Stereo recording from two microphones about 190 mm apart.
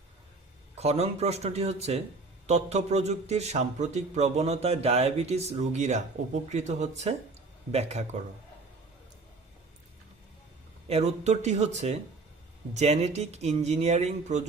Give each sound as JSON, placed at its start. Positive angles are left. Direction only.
{"t": 0.8, "sound": "a man's voice", "side_deg": -35}
{"t": 10.8, "sound": "a man's voice", "side_deg": -35}